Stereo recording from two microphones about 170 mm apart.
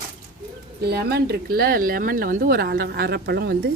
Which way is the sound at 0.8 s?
70° right (ahead or behind).